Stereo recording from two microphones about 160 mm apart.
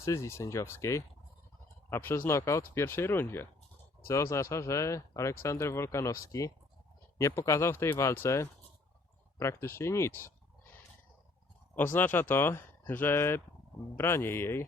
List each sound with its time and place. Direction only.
0.0 s speech: 20° left (ahead or behind)
11.7 s speech: 15° left (ahead or behind)